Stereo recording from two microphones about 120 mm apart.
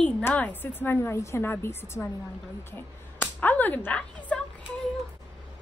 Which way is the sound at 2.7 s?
15° left (ahead or behind).